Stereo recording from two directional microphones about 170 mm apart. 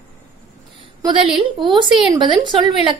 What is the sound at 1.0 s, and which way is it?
A woman's voice, 30° right (ahead or behind).